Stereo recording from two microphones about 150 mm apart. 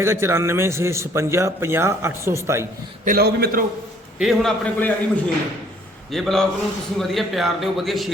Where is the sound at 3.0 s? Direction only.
90° right.